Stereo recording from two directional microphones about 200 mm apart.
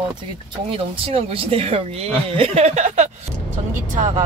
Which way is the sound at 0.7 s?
30° right (ahead or behind).